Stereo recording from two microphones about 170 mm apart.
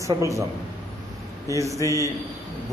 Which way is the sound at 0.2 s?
20° right (ahead or behind).